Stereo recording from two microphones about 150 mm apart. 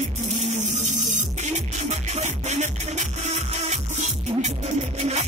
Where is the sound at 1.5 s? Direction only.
50° right (ahead or behind).